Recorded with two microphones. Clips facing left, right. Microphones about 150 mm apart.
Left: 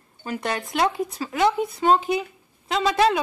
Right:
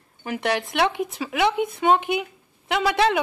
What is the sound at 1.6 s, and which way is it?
Speech, 70° right (ahead or behind).